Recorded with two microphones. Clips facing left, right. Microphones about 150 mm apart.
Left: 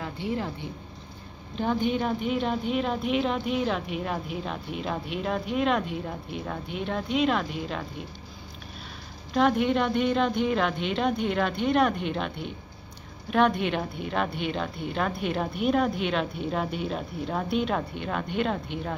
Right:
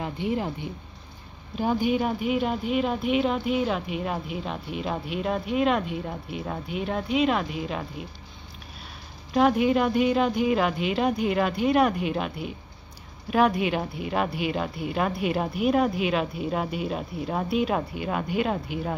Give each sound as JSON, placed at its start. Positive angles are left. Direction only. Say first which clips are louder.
{"t": 0.0, "sound": "a woman's voice", "louder": "right 3 dB", "side_deg": -15}
{"t": 9.3, "sound": "speech", "louder": "right 2 dB", "side_deg": -5}